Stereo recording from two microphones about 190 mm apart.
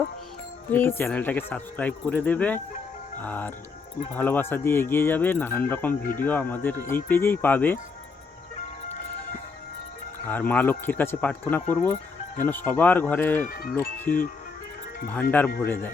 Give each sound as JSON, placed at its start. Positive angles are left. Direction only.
{"t": 0.7, "sound": "speech", "side_deg": 10}
{"t": 5.9, "sound": "speech", "side_deg": 45}
{"t": 6.2, "sound": "speech", "side_deg": 10}
{"t": 10.2, "sound": "speech", "side_deg": 10}
{"t": 13.4, "sound": "speech", "side_deg": 50}
{"t": 13.7, "sound": "speech", "side_deg": 10}